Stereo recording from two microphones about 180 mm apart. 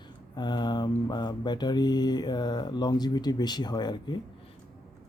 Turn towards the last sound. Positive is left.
turn(degrees=25)  # may be behind; listen again after turning